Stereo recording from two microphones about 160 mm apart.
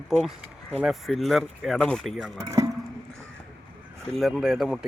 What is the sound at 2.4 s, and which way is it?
Speech, 20° right (ahead or behind).